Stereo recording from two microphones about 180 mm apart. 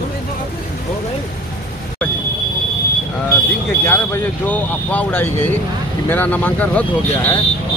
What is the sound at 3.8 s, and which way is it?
Speech, 10° left (ahead or behind).